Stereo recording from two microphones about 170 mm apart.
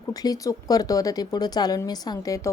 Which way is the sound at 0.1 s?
20° left (ahead or behind).